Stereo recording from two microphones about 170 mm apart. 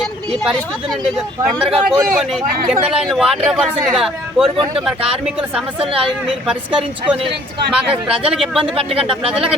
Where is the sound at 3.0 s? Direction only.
Centre (ahead or behind).